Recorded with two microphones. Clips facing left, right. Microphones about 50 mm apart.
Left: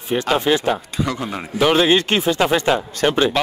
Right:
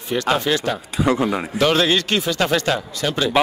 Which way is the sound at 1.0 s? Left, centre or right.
Right.